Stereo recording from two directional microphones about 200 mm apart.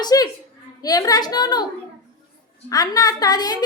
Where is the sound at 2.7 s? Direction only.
20° left (ahead or behind).